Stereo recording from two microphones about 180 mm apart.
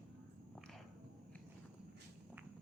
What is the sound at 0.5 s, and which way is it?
Biting, centre (ahead or behind).